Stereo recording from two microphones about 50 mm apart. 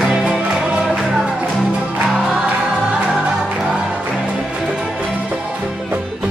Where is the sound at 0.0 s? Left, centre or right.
Centre.